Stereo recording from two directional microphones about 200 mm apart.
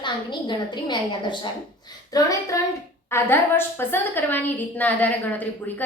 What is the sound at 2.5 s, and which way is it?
A woman's voice, 15° left (ahead or behind).